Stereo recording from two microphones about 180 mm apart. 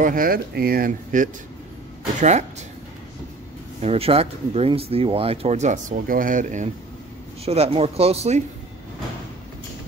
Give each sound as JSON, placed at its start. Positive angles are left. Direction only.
{"t": 0.0, "sound": "speech", "side_deg": -50}
{"t": 3.8, "sound": "speech", "side_deg": -35}
{"t": 7.4, "sound": "speech", "side_deg": -35}